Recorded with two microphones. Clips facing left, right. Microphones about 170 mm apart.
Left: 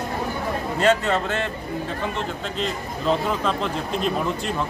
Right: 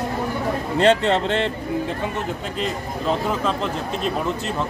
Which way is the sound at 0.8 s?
30° right (ahead or behind).